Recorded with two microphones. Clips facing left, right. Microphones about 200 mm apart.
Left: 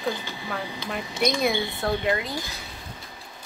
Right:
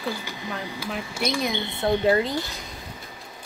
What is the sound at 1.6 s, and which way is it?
Speech, 20° right (ahead or behind).